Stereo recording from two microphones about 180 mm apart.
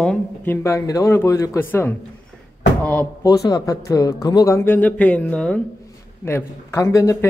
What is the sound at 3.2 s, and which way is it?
Speech, 20° left (ahead or behind).